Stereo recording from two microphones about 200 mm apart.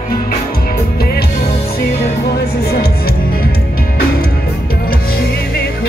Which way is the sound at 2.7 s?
50° left (ahead or behind).